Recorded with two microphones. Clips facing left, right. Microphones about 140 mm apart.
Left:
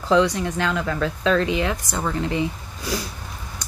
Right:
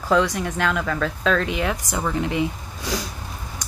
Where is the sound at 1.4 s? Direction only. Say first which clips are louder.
Left 2 dB; 20° left (ahead or behind).